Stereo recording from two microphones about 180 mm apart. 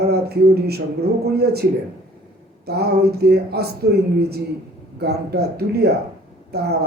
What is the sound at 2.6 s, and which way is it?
Speech, 65° right (ahead or behind).